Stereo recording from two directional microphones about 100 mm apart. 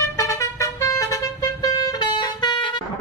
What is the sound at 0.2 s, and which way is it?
Music, 30° left (ahead or behind).